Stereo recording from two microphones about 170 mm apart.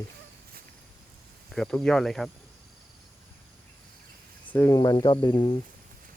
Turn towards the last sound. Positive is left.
turn(degrees=25)  # may be behind; listen again after turning